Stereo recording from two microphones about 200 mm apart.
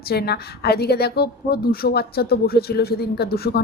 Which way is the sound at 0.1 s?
50° left (ahead or behind).